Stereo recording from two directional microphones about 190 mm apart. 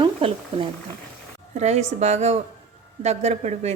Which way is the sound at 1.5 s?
35° right (ahead or behind).